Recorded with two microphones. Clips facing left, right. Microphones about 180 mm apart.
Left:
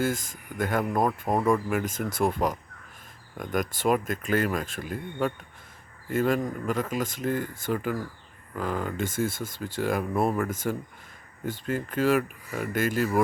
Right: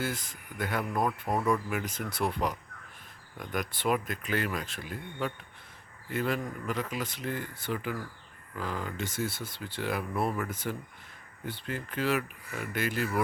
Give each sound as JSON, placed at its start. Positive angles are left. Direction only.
{"t": 0.0, "sound": "speech", "side_deg": 45}